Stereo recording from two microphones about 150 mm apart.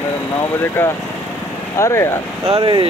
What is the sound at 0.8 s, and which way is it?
Speech, 15° left (ahead or behind).